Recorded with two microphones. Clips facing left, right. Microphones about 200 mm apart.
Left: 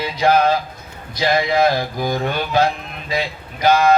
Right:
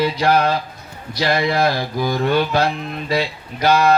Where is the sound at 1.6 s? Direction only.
50° left (ahead or behind).